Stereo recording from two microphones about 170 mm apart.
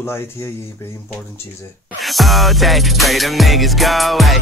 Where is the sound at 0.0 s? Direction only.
15° left (ahead or behind).